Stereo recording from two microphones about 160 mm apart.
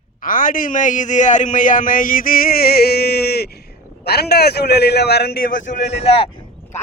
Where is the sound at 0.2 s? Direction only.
60° left (ahead or behind); by 6.1 s 90° left.